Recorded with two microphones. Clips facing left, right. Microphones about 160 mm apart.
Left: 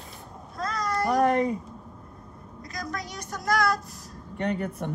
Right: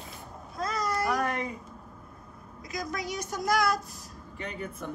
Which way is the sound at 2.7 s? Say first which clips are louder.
Right 1 dB; 5° right (ahead or behind).